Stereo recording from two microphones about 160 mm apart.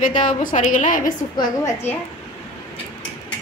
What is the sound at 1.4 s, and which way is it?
Speech, 20° left (ahead or behind).